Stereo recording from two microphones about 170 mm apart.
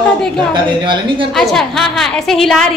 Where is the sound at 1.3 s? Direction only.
Centre (ahead or behind).